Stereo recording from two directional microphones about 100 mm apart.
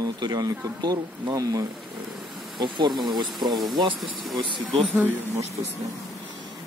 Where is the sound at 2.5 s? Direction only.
50° right (ahead or behind).